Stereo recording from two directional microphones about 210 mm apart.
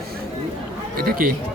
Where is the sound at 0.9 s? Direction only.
40° right (ahead or behind).